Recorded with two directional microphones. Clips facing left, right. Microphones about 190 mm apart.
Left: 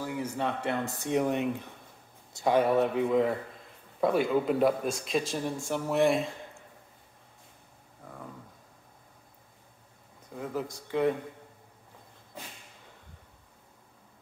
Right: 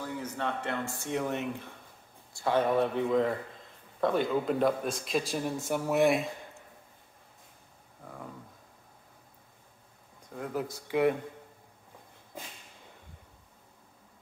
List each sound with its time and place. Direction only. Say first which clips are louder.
0.0 s a man's voice: left 3 dB; 10° left (ahead or behind); by 6.2 s 5° right (ahead or behind)
8.0 s a sound: right 1 dB; centre (ahead or behind)
10.3 s a man's voice: even; centre (ahead or behind)